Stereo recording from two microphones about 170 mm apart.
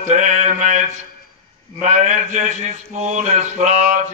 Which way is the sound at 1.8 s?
45° right (ahead or behind).